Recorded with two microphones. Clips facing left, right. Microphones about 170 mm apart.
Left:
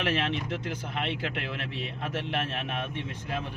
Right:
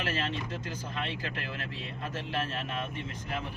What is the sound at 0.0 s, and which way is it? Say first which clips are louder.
Speech: left 4 dB; 70° left (ahead or behind).